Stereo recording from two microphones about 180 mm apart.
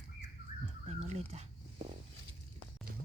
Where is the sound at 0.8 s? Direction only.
35° right (ahead or behind).